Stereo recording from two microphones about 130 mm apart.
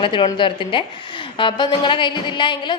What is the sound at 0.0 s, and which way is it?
A man's voice, 40° left (ahead or behind).